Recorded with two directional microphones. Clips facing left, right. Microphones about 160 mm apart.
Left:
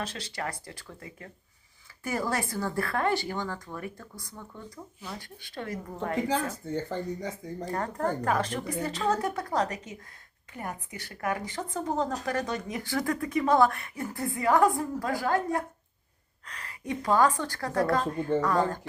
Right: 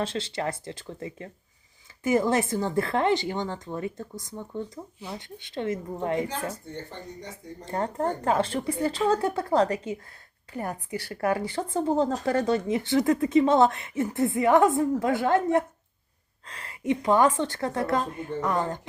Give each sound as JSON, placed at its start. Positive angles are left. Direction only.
{"t": 0.0, "sound": "speech", "side_deg": -25}
{"t": 7.6, "sound": "speech", "side_deg": -25}